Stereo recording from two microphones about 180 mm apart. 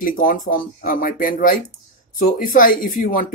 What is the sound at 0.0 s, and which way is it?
Speech, 50° left (ahead or behind).